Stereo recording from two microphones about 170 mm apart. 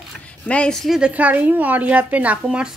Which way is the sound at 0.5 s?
5° left (ahead or behind).